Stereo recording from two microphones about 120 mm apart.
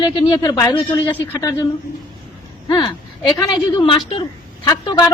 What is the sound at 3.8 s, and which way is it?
Speech, 45° left (ahead or behind).